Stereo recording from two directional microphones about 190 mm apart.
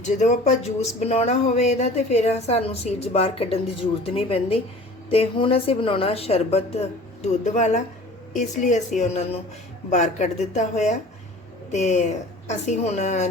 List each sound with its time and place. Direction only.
0.0 s speech: 40° left (ahead or behind)
9.9 s speech: 40° left (ahead or behind)